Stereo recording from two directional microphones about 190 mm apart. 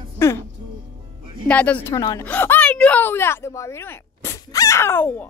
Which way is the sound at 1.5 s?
5° left (ahead or behind).